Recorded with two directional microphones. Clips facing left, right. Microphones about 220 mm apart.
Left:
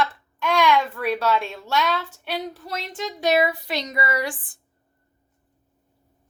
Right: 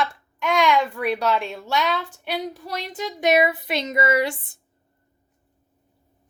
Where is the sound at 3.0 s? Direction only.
20° right (ahead or behind).